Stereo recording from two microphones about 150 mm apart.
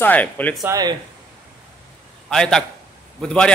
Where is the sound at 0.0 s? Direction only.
10° left (ahead or behind).